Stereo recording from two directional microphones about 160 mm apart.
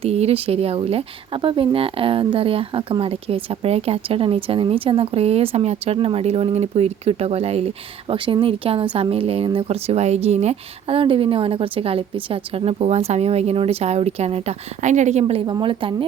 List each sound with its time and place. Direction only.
0.0 s speech: 40° right (ahead or behind)